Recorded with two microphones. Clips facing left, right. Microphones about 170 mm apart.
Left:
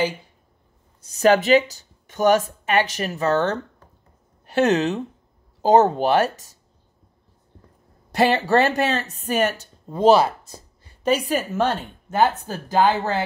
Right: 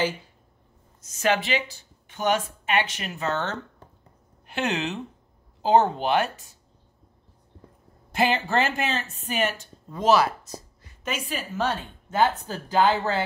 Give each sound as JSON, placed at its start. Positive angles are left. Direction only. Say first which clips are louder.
{"t": 1.0, "sound": "speech", "louder": "left 8 dB", "side_deg": 35}
{"t": 8.1, "sound": "speech", "louder": "left 5 dB", "side_deg": 40}
{"t": 10.8, "sound": "a sound", "louder": "left 12 dB", "side_deg": 35}
{"t": 12.2, "sound": "speech", "louder": "left 3 dB", "side_deg": 45}